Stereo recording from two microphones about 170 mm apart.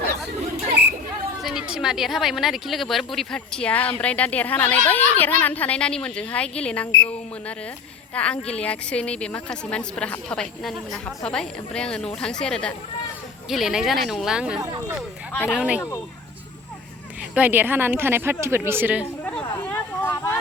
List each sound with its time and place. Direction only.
0.8 s chatter: 80° right
1.4 s speech: centre (ahead or behind)
8.1 s speech: 5° left (ahead or behind)
14.6 s speech: 20° right (ahead or behind)
15.4 s a woman's voice: 5° right (ahead or behind)
17.3 s a woman's voice: 10° right (ahead or behind)
19.2 s a sound: 5° left (ahead or behind)